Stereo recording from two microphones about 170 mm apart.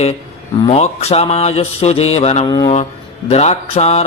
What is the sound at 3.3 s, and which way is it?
Mantra, 40° left (ahead or behind).